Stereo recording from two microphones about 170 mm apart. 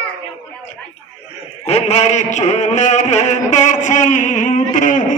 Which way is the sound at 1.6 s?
40° left (ahead or behind).